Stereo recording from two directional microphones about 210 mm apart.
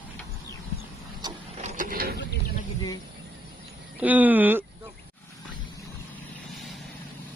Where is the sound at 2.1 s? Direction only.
50° left (ahead or behind).